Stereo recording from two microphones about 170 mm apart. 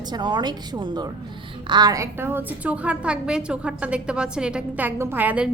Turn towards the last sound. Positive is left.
turn(degrees=-10)  # may be behind; listen again after turning